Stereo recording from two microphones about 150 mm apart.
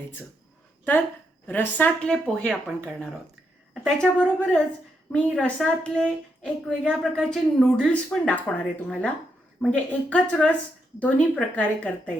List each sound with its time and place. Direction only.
1.5 s a woman's voice: 10° left (ahead or behind)